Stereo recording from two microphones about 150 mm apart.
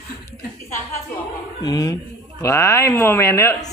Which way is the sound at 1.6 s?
25° left (ahead or behind).